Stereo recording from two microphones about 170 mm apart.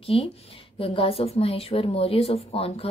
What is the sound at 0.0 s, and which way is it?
A woman's voice, 35° left (ahead or behind).